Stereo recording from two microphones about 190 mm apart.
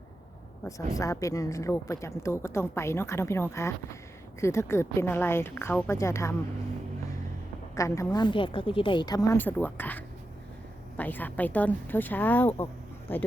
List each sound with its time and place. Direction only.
0.6 s a woman's voice: 15° left (ahead or behind)
7.8 s a woman's voice: 15° left (ahead or behind)